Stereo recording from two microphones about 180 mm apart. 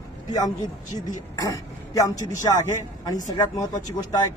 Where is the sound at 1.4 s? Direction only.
20° left (ahead or behind).